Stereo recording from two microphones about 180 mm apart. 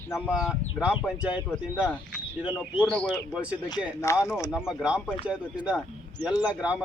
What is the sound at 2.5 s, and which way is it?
Speech, 10° left (ahead or behind).